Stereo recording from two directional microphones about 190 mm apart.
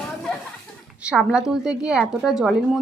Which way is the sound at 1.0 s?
5° right (ahead or behind).